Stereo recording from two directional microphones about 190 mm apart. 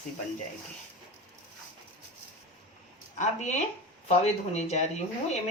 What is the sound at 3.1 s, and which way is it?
Speech, 40° left (ahead or behind).